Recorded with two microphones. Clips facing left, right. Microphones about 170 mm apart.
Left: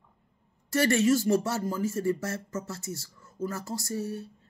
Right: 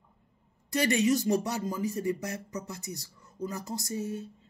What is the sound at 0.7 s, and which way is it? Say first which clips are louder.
Speech: left 2 dB; 15° right (ahead or behind).